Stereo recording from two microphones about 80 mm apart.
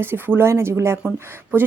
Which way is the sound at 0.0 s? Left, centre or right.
Right.